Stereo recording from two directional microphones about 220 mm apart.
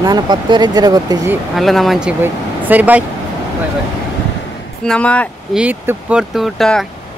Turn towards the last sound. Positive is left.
turn(degrees=0)  # may be behind; listen again after turning